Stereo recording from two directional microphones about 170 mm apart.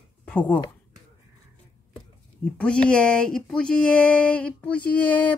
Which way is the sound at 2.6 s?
5° left (ahead or behind).